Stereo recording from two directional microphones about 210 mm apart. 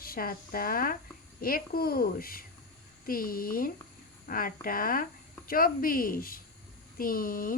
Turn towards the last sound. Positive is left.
turn(degrees=40)  # may be behind; listen again after turning